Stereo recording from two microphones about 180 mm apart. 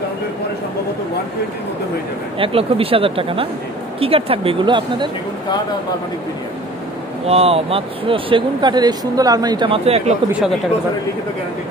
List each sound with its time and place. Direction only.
2.3 s speech: 30° right (ahead or behind)
7.2 s speech: 35° right (ahead or behind)